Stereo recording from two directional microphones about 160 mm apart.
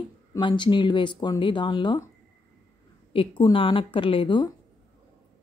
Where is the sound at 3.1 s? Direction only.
30° left (ahead or behind).